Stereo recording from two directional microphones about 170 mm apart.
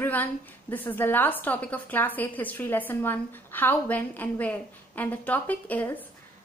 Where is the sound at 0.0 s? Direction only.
10° left (ahead or behind).